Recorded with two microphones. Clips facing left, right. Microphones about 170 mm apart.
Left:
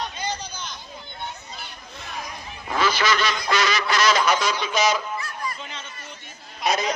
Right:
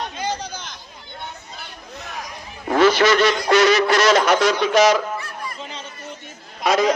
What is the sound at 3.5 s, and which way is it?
Quack, 60° right (ahead or behind).